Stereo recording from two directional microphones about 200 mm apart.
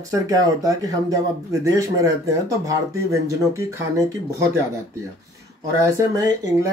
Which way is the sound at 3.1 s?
15° right (ahead or behind).